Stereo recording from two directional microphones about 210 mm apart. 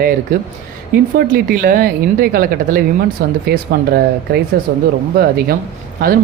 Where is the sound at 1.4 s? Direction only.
40° right (ahead or behind).